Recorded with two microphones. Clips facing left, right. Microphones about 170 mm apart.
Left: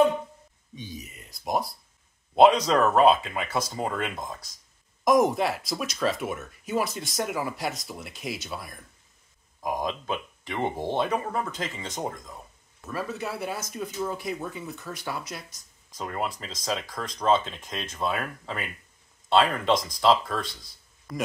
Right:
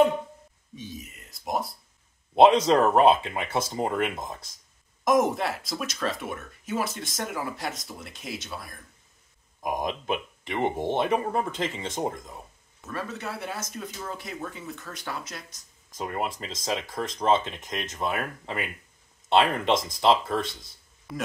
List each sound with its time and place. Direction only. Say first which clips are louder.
0.7 s speech: even; centre (ahead or behind)
2.3 s speech: right 1 dB; 25° right (ahead or behind)
5.0 s speech: left 2 dB; centre (ahead or behind)
9.6 s speech: even; 20° right (ahead or behind)
12.8 s speech: left 2 dB; 5° left (ahead or behind)
16.0 s speech: right 1 dB; 20° right (ahead or behind)
21.1 s speech: left 2 dB; 5° right (ahead or behind)